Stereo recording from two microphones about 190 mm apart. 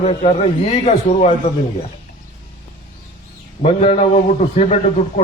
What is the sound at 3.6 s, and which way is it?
A man's voice, 35° left (ahead or behind).